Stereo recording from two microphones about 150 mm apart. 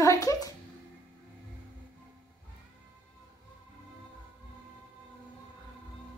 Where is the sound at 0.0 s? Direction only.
20° left (ahead or behind).